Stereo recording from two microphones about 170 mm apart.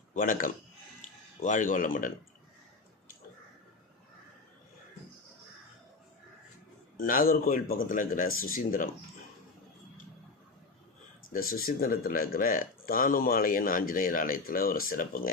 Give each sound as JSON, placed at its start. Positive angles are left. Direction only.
{"t": 0.1, "sound": "speech", "side_deg": 50}
{"t": 7.0, "sound": "speech", "side_deg": 55}
{"t": 11.3, "sound": "speech", "side_deg": 60}